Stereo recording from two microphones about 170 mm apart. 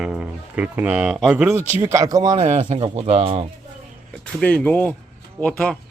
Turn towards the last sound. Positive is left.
turn(degrees=5)  # may be behind; listen again after turning